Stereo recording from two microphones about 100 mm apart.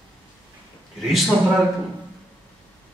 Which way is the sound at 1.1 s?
Centre (ahead or behind).